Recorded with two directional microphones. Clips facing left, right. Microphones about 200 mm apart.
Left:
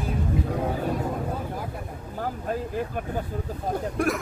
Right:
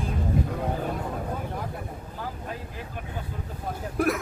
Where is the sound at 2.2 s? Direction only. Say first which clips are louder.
Left 8 dB; 45° left (ahead or behind).